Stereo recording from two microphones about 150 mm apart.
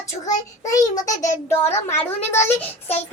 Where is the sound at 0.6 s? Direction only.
25° left (ahead or behind).